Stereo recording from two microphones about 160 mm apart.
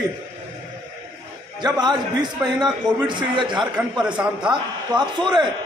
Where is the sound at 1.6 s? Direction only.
25° right (ahead or behind).